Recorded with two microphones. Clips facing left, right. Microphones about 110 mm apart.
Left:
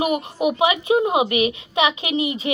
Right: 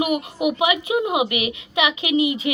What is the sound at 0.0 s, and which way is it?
A woman's voice, 30° left (ahead or behind).